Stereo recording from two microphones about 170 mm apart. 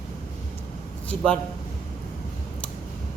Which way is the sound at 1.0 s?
5° left (ahead or behind).